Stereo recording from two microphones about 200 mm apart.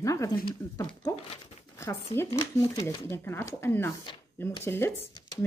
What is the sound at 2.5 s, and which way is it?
Speech, 20° left (ahead or behind).